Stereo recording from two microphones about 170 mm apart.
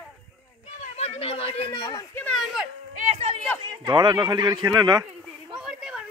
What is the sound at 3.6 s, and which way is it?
Speech, 25° right (ahead or behind).